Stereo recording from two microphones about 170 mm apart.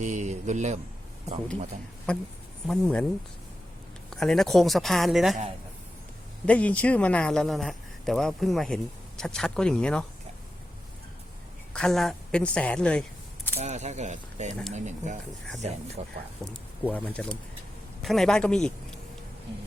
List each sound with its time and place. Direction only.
0.0 s speech: 45° right (ahead or behind)
2.6 s a man's voice: 5° left (ahead or behind)
4.1 s a man's voice: centre (ahead or behind)
6.4 s a man's voice: 10° left (ahead or behind)
11.7 s speech: 5° left (ahead or behind)
13.6 s speech: 40° right (ahead or behind)
16.4 s a man's voice: 10° left (ahead or behind)